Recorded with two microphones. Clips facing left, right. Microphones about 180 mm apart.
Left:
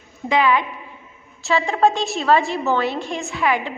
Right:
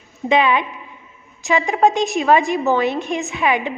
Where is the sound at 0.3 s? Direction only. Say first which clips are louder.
Right 2 dB; 20° right (ahead or behind).